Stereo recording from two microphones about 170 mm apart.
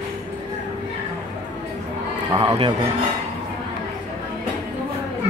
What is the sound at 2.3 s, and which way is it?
Speech, 30° right (ahead or behind).